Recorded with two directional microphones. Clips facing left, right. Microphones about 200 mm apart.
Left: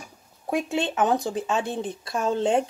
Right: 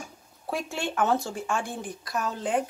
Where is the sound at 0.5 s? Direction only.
15° left (ahead or behind).